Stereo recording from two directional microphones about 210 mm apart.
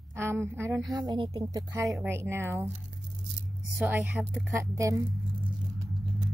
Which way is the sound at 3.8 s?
5° right (ahead or behind).